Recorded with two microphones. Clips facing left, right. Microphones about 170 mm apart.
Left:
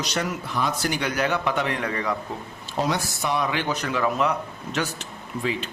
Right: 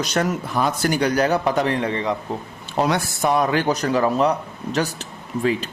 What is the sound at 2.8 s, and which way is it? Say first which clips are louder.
Speech: right 5 dB; 55° right (ahead or behind).